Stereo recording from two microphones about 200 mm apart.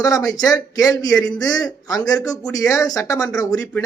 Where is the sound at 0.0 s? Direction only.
20° left (ahead or behind).